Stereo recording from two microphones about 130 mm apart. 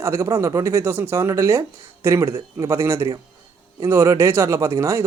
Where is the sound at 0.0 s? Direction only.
20° right (ahead or behind).